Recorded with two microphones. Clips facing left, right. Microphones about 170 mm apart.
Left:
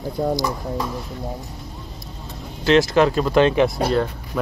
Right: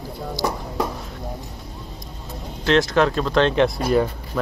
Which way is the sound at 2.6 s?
5° left (ahead or behind).